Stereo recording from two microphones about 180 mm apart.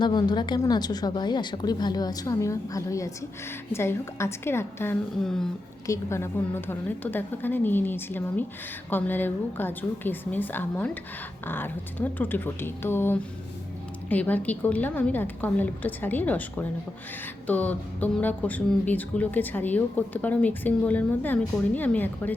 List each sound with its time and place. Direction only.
0.0 s a woman's voice: 25° left (ahead or behind)